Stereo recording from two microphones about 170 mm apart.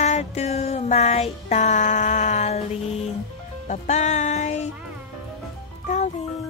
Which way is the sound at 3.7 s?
40° left (ahead or behind).